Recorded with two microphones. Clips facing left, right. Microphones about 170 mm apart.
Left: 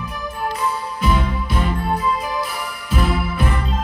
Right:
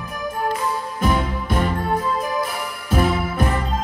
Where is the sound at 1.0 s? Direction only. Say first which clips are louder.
Even; 50° right (ahead or behind).